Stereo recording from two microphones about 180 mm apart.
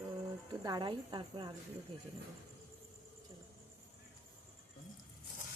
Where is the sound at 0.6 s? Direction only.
25° right (ahead or behind).